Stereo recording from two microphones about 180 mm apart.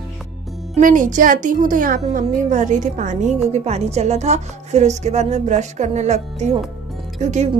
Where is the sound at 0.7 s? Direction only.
45° right (ahead or behind).